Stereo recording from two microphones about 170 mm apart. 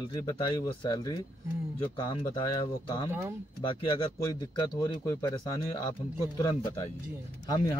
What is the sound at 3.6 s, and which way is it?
Speech, 30° left (ahead or behind).